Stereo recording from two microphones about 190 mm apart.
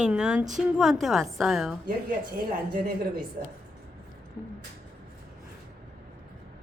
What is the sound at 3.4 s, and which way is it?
Speech, 40° right (ahead or behind).